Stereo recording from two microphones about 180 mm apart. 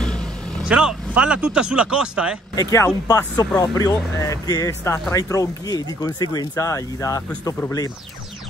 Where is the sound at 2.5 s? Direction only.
20° left (ahead or behind).